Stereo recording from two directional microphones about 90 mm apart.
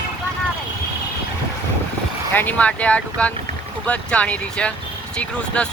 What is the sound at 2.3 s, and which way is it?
Speech, 20° left (ahead or behind).